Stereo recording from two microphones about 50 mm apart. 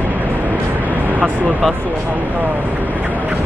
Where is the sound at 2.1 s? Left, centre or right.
Right.